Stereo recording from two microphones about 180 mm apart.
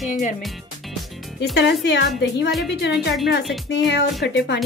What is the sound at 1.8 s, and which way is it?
A woman's voice, 70° left (ahead or behind).